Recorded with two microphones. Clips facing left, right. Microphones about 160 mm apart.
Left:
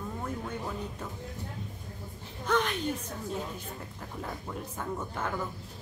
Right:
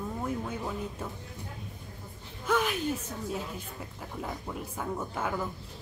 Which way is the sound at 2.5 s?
5° right (ahead or behind).